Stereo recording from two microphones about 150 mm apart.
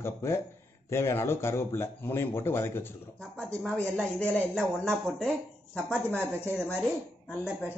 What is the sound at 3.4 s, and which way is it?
A man's voice, 5° left (ahead or behind).